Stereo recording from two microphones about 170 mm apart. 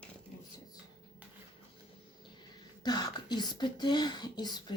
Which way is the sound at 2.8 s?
25° left (ahead or behind).